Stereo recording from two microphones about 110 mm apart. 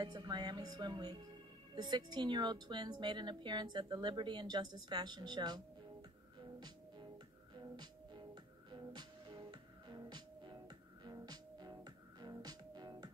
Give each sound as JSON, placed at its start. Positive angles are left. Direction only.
{"t": 0.0, "sound": "a woman's voice", "side_deg": -40}
{"t": 7.5, "sound": "music", "side_deg": -40}